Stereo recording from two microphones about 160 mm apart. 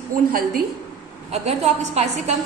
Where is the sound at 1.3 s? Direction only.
45° right (ahead or behind).